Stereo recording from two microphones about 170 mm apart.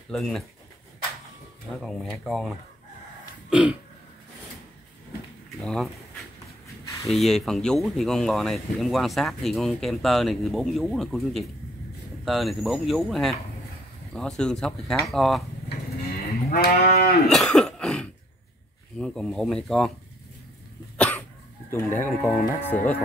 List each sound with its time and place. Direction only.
0.1 s speech: centre (ahead or behind)
1.8 s speech: centre (ahead or behind)
3.4 s throat clearing: 5° right (ahead or behind)
5.6 s speech: 5° left (ahead or behind)
7.1 s speech: centre (ahead or behind)
16.4 s livestock: 60° left (ahead or behind)
17.3 s cough: 5° left (ahead or behind)
18.9 s speech: 5° left (ahead or behind)
21.7 s speech: 15° left (ahead or behind)